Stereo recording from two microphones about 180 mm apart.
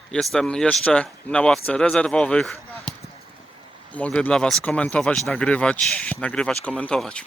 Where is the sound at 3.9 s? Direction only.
5° left (ahead or behind).